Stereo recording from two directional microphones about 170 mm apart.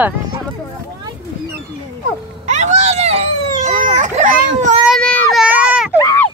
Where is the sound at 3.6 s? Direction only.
45° right (ahead or behind).